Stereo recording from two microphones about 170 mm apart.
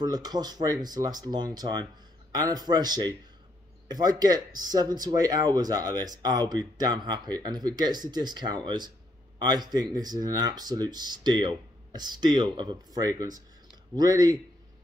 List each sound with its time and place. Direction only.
0.0 s speech: 25° right (ahead or behind)